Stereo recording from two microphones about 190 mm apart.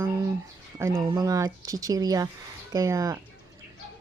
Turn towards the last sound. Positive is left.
turn(degrees=-15)  # may be behind; listen again after turning